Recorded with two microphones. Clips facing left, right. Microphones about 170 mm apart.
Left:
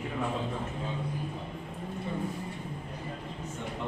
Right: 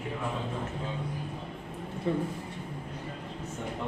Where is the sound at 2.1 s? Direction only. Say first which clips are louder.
Right 8 dB; 90° right.